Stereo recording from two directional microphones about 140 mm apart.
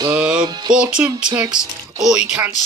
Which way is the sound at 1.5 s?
5° right (ahead or behind).